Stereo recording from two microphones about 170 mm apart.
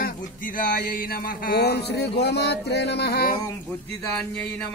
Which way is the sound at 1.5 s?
70° left (ahead or behind).